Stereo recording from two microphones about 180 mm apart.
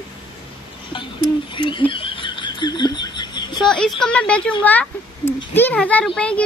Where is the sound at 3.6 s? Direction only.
5° left (ahead or behind).